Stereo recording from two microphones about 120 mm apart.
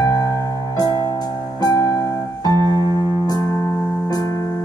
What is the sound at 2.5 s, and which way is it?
Keyboard, 35° right (ahead or behind).